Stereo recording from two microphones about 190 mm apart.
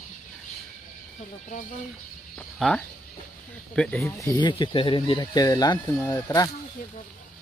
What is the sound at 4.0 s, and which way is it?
Speech, 15° left (ahead or behind).